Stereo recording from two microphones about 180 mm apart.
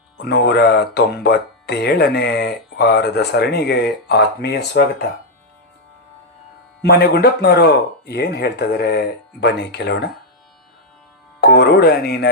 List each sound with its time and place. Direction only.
0.2 s speech: 70° left (ahead or behind)
6.8 s speech: 65° left (ahead or behind)
11.3 s speech: 60° left (ahead or behind)